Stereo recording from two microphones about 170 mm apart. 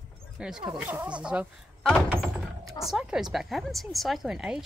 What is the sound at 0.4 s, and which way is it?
Speech, 5° right (ahead or behind).